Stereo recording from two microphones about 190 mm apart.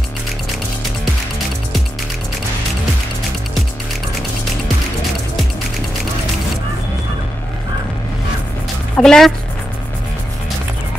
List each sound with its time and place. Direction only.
8.9 s speech: 5° left (ahead or behind)